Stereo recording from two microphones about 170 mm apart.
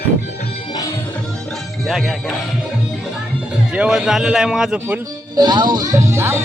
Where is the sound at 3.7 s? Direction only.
5° right (ahead or behind).